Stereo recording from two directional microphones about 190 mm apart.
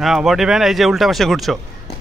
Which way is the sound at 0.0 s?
Centre (ahead or behind).